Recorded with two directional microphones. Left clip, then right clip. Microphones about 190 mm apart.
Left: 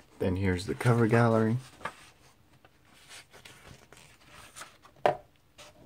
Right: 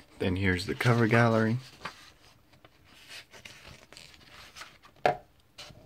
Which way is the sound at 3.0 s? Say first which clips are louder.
Right 3 dB; 20° right (ahead or behind).